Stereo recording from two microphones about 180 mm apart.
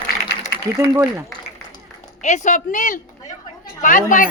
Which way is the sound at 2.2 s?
40° left (ahead or behind).